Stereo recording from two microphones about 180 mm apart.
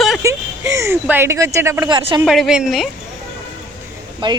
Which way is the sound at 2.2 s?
Centre (ahead or behind).